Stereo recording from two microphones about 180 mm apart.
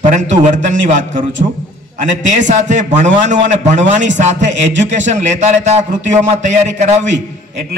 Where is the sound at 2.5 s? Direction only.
45° right (ahead or behind).